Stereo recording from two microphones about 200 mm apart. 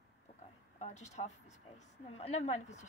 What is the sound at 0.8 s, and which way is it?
A woman's voice, 35° left (ahead or behind).